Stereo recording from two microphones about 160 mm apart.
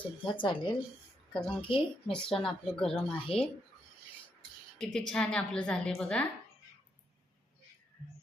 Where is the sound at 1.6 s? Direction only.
35° left (ahead or behind).